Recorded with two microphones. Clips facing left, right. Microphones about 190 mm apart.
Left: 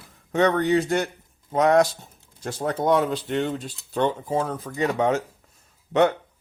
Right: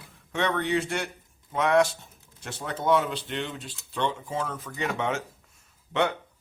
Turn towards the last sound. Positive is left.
turn(degrees=40)  # may be behind; listen again after turning